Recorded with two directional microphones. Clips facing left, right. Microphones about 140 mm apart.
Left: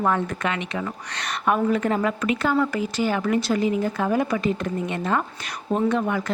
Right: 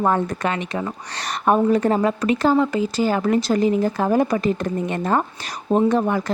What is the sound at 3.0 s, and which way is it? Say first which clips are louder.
Speech: right 3 dB; 35° right (ahead or behind).